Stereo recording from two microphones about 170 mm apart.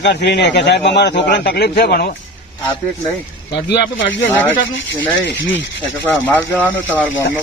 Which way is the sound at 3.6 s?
80° left.